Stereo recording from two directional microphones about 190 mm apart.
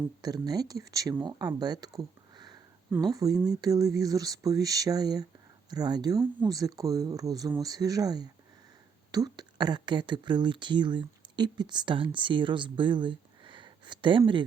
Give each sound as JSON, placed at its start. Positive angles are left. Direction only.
{"t": 0.2, "sound": "speech", "side_deg": -20}